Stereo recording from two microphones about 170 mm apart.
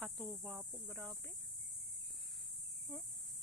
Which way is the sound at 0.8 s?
10° left (ahead or behind).